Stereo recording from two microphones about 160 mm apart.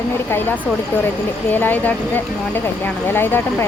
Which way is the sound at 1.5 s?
10° left (ahead or behind).